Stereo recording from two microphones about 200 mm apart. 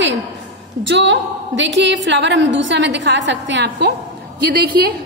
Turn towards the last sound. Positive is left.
turn(degrees=-50)  # may be behind; listen again after turning